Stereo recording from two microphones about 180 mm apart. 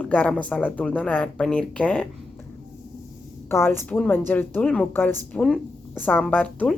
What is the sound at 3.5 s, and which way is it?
Speech, 15° left (ahead or behind).